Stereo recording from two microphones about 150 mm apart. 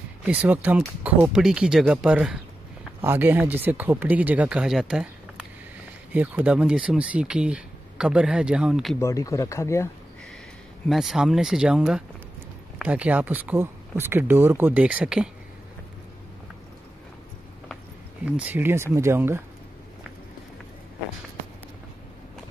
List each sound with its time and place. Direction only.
0.2 s speech: 10° right (ahead or behind)
6.1 s speech: 10° right (ahead or behind)
9.0 s speech: 20° left (ahead or behind)
10.9 s speech: centre (ahead or behind)
18.2 s speech: 10° right (ahead or behind)